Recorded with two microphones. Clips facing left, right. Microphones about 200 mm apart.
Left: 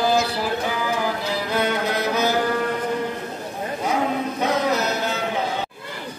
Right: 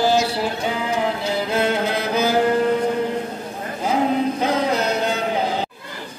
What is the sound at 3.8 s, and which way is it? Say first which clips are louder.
Choir: right 4 dB; 30° right (ahead or behind).